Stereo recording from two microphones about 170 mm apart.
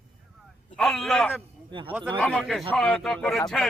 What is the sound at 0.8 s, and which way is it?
A man's voice, centre (ahead or behind).